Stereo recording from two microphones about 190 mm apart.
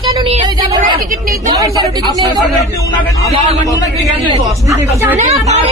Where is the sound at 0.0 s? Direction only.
25° right (ahead or behind).